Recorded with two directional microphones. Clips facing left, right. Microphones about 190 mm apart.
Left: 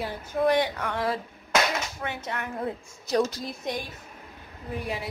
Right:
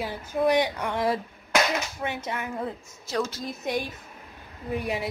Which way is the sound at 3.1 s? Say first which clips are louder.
Left 4 dB; 15° left (ahead or behind).